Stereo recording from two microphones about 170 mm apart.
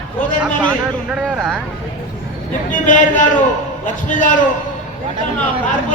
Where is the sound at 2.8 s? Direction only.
50° left (ahead or behind).